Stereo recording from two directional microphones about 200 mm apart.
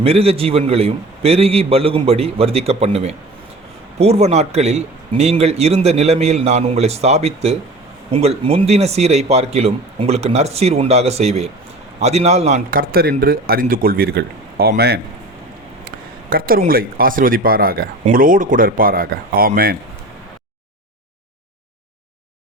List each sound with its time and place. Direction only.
0.0 s a man's voice: 30° right (ahead or behind); by 15.0 s 55° right (ahead or behind)
16.3 s a man's voice: 45° right (ahead or behind)